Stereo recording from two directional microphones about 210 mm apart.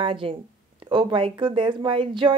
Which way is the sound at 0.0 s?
25° right (ahead or behind).